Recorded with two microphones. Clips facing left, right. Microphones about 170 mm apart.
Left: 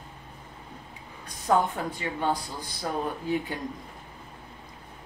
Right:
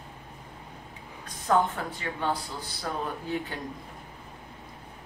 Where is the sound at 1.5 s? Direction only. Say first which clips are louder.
Left 1 dB; 15° left (ahead or behind).